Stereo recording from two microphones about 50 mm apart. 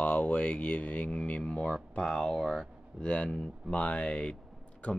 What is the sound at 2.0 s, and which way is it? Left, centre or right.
Speech, centre.